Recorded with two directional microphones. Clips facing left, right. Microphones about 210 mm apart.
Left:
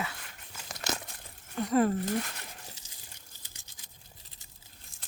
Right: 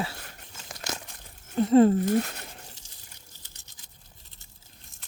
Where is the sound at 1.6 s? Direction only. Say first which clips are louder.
Right 8 dB; 25° right (ahead or behind).